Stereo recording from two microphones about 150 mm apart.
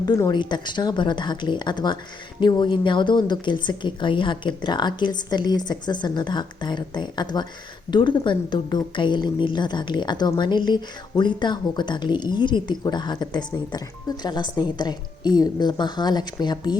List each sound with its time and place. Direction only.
0.0 s a woman's voice: 25° left (ahead or behind)